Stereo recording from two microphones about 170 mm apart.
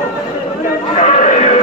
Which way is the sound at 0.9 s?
40° left (ahead or behind).